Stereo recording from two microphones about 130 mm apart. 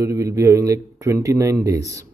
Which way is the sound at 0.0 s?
25° right (ahead or behind).